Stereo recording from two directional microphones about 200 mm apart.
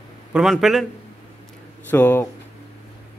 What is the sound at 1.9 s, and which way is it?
Speech, 10° left (ahead or behind).